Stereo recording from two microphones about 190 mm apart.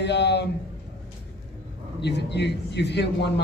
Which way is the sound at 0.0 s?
65° left (ahead or behind).